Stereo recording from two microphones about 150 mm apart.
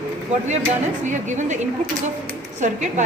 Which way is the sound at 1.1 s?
55° right (ahead or behind).